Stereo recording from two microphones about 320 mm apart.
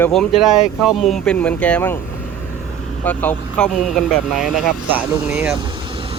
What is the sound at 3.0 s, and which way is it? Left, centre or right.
Speech, centre.